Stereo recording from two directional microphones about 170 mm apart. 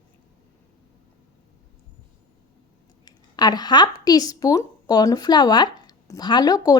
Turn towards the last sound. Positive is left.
turn(degrees=20)  # may be behind; listen again after turning